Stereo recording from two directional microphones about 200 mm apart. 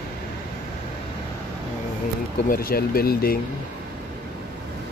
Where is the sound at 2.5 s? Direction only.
50° left (ahead or behind).